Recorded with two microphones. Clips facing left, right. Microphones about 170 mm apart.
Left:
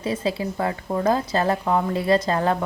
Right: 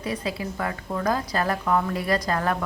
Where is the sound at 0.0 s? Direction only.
25° left (ahead or behind).